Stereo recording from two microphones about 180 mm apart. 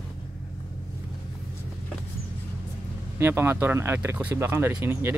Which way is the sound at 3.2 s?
10° right (ahead or behind).